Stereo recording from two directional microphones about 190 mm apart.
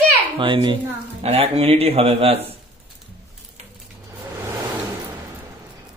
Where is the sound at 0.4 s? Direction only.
25° right (ahead or behind).